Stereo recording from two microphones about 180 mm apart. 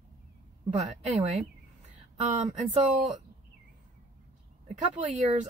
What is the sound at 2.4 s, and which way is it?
Speech, 40° right (ahead or behind).